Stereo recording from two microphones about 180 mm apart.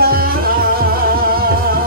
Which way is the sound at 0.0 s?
55° right (ahead or behind).